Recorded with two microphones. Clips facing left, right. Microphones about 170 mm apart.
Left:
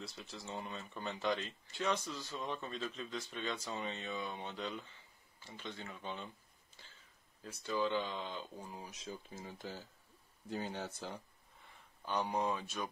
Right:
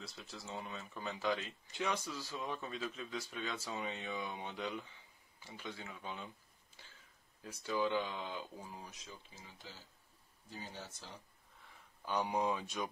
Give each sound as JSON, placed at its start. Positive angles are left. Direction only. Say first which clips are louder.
{"t": 0.0, "sound": "speech", "louder": "left 2 dB", "side_deg": 0}
{"t": 7.4, "sound": "speech", "louder": "even", "side_deg": -10}
{"t": 9.0, "sound": "speech", "louder": "left 8 dB", "side_deg": 45}
{"t": 12.0, "sound": "speech", "louder": "even", "side_deg": -10}